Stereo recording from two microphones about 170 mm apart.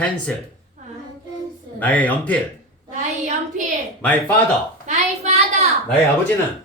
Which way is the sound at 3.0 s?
45° right (ahead or behind).